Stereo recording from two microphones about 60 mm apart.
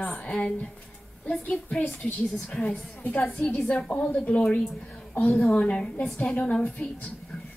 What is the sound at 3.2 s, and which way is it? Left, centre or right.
Speech, centre.